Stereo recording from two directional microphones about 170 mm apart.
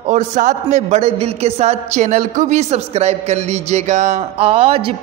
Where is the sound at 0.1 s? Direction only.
45° right (ahead or behind).